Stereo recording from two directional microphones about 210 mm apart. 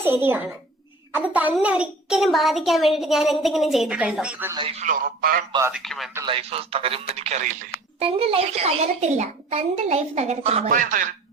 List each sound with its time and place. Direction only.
0.0 s a child's voice: 10° right (ahead or behind)
4.5 s a woman's voice: 25° right (ahead or behind)
5.5 s a child's voice: 15° right (ahead or behind)
5.7 s a woman's voice: centre (ahead or behind)
6.2 s a woman's voice: 25° right (ahead or behind)